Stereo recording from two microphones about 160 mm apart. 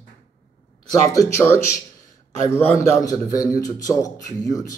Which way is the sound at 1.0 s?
20° left (ahead or behind).